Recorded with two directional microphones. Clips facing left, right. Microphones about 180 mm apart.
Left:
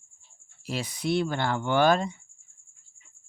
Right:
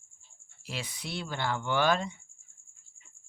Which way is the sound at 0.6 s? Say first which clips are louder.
Left 10 dB; 40° left (ahead or behind).